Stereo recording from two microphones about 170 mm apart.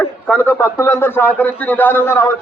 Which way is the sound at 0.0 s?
10° left (ahead or behind).